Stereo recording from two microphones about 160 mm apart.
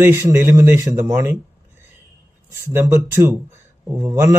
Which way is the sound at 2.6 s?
15° right (ahead or behind).